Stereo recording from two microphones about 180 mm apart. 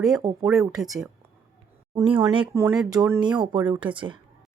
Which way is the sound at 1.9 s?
25° right (ahead or behind).